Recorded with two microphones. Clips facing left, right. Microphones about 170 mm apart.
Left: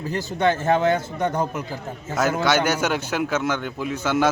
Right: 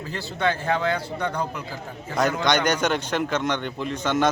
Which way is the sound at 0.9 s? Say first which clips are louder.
Left 4 dB; 45° left (ahead or behind).